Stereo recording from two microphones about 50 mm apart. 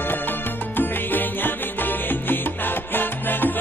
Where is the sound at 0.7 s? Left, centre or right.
Left.